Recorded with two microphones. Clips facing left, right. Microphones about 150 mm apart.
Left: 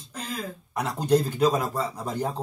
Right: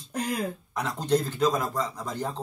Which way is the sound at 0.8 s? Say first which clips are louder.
Left 3 dB; 10° left (ahead or behind).